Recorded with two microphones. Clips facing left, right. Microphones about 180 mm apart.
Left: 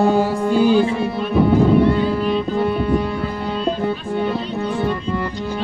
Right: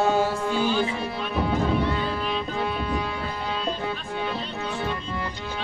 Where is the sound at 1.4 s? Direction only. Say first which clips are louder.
Left 10 dB; 50° left (ahead or behind).